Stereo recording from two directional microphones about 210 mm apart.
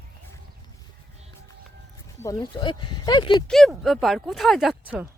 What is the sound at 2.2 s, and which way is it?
Speech, 15° left (ahead or behind).